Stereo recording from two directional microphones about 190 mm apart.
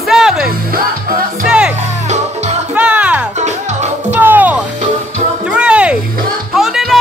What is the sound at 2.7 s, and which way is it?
Music, 5° right (ahead or behind).